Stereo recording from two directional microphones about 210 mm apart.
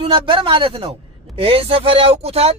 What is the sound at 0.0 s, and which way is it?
Speech, 25° right (ahead or behind).